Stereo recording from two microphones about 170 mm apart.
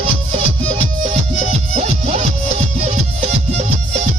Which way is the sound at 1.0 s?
40° right (ahead or behind).